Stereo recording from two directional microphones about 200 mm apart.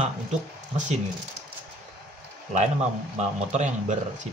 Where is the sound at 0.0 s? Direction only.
35° right (ahead or behind).